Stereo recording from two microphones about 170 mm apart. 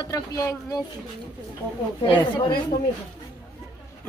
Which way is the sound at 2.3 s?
25° left (ahead or behind).